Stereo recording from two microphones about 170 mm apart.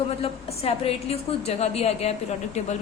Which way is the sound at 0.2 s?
35° left (ahead or behind).